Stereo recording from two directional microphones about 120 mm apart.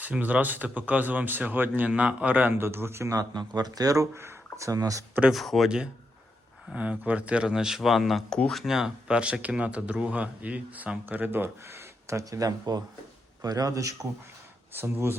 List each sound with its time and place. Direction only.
0.0 s a man's voice: 15° right (ahead or behind); by 5.0 s 30° right (ahead or behind)
5.3 s a man's voice: centre (ahead or behind); by 15.2 s 20° right (ahead or behind)